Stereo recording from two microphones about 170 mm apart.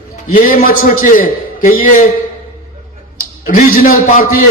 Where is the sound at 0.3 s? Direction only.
55° left (ahead or behind).